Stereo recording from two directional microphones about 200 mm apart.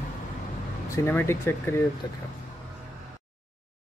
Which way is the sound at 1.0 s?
10° left (ahead or behind).